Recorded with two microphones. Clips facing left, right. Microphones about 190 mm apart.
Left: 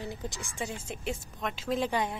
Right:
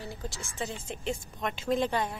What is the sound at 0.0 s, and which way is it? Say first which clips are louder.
Speech: left 2 dB; 20° left (ahead or behind).